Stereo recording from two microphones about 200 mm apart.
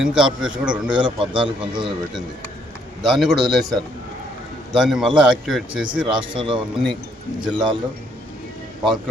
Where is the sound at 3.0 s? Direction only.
Centre (ahead or behind).